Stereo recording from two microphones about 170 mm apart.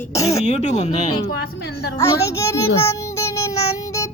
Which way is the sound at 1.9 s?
15° left (ahead or behind).